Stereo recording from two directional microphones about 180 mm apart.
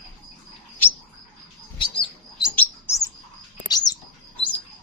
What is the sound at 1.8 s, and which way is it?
Bird, 25° left (ahead or behind).